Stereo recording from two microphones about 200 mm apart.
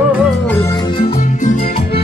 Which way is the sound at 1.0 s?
30° left (ahead or behind).